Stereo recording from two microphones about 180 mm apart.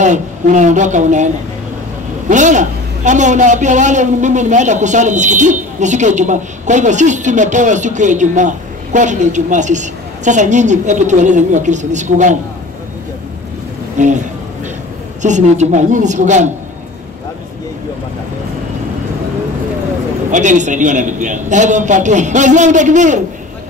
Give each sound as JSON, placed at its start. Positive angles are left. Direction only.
{"t": 0.0, "sound": "a man's voice", "side_deg": -45}
{"t": 13.9, "sound": "speech", "side_deg": -45}
{"t": 15.2, "sound": "a woman's voice", "side_deg": -40}
{"t": 20.2, "sound": "a man's voice", "side_deg": -45}